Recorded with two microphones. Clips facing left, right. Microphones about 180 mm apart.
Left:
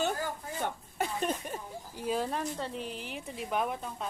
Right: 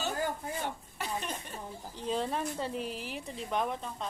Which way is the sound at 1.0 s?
50° left (ahead or behind).